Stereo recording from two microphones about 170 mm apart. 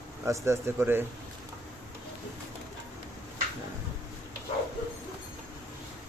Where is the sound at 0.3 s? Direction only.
15° right (ahead or behind).